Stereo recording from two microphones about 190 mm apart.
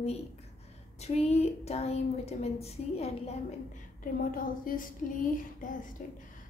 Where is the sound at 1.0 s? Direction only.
35° left (ahead or behind).